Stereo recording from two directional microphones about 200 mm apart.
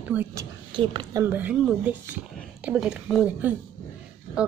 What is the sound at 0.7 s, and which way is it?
Speech, 25° right (ahead or behind).